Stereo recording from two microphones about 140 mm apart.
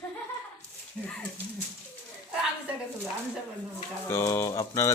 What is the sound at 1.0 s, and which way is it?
Speech, 10° left (ahead or behind).